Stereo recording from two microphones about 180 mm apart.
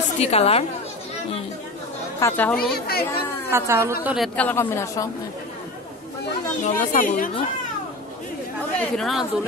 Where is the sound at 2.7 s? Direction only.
60° left (ahead or behind).